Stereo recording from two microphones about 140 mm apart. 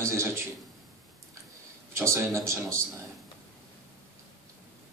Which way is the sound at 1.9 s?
20° right (ahead or behind).